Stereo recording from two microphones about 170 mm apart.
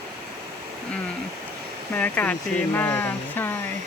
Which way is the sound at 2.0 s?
10° left (ahead or behind).